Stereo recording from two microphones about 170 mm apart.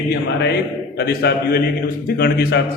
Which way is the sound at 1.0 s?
70° left (ahead or behind).